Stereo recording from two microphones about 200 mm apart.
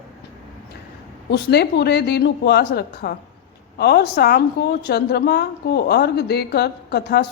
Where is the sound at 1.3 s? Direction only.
55° left (ahead or behind).